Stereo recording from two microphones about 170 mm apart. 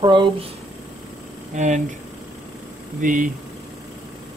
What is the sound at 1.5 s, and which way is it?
Speech, 45° right (ahead or behind).